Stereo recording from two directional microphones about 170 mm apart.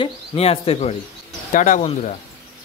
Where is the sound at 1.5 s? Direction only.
50° left (ahead or behind).